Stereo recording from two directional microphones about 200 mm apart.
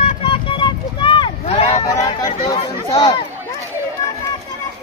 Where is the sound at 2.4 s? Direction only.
30° left (ahead or behind).